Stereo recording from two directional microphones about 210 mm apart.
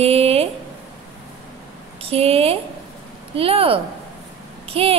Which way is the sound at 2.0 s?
30° right (ahead or behind).